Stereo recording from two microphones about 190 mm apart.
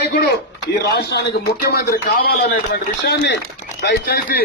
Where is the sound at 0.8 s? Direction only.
60° left (ahead or behind).